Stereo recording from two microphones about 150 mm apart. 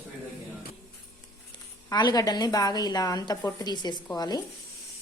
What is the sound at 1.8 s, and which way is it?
A woman's voice, 25° left (ahead or behind).